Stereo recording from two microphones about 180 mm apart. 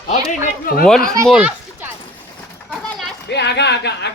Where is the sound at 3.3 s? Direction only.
70° left (ahead or behind).